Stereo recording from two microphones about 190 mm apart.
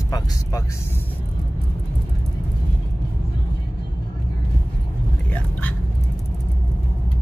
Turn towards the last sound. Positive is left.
turn(degrees=10)  # may be behind; listen again after turning